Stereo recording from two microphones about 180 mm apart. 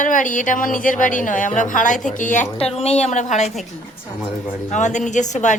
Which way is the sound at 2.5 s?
35° left (ahead or behind).